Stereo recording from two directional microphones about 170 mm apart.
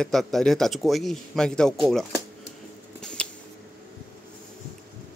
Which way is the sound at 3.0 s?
5° left (ahead or behind).